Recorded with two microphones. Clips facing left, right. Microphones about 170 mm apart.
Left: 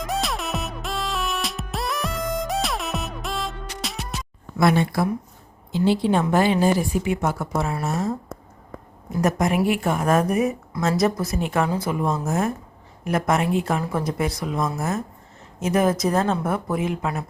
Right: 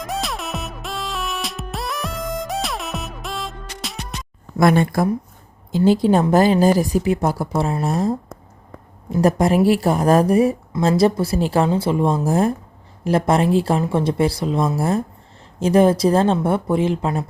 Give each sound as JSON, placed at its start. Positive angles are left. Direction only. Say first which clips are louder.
{"t": 0.0, "sound": "music", "louder": "even", "side_deg": 0}
{"t": 4.5, "sound": "a woman's voice", "louder": "right 4 dB", "side_deg": -50}